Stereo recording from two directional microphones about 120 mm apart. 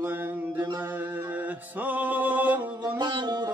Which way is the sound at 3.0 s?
35° right (ahead or behind).